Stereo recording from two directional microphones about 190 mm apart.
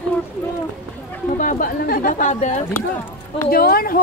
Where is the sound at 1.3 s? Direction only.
40° left (ahead or behind).